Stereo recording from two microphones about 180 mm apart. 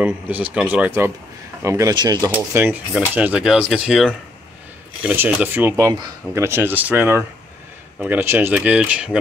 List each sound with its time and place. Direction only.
0.0 s speech: 5° right (ahead or behind)